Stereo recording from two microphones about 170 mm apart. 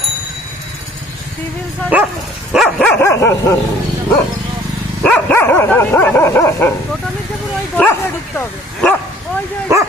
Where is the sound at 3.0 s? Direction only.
15° left (ahead or behind).